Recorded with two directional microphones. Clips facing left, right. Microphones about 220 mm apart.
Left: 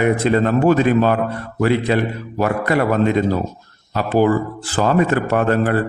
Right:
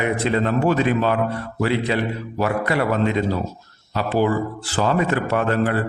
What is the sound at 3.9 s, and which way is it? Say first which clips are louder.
A man's voice: left 4 dB; 50° left (ahead or behind).